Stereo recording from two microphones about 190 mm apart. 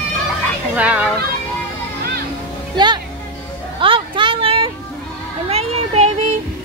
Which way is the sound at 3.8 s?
25° right (ahead or behind).